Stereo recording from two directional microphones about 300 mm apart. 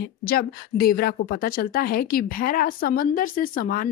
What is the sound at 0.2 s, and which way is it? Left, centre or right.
A woman's voice, left.